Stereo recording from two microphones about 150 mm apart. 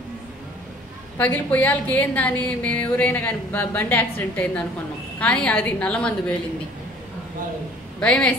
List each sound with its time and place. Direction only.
1.1 s a woman's voice: 10° left (ahead or behind)
8.0 s a woman's voice: 10° left (ahead or behind)